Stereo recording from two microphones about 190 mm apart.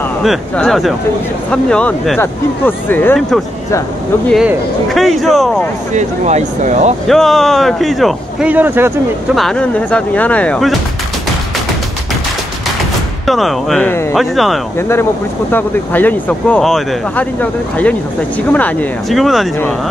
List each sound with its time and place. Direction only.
0.2 s speech: centre (ahead or behind)
4.3 s speech: centre (ahead or behind)
5.9 s speech: 35° right (ahead or behind)
7.1 s speech: centre (ahead or behind)
9.3 s speech: centre (ahead or behind)
13.3 s speech: centre (ahead or behind)
14.8 s speech: 15° left (ahead or behind)